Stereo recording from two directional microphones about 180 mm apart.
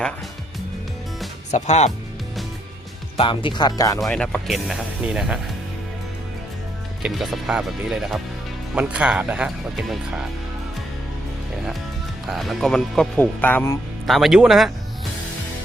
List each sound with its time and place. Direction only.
1.5 s speech: 40° left (ahead or behind)
3.2 s speech: 25° left (ahead or behind)
4.0 s speech: 5° left (ahead or behind)
7.0 s speech: centre (ahead or behind)
12.2 s speech: centre (ahead or behind)
14.1 s speech: centre (ahead or behind)